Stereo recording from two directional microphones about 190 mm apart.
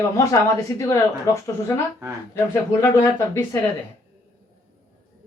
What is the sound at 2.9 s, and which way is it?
Speech, 15° left (ahead or behind).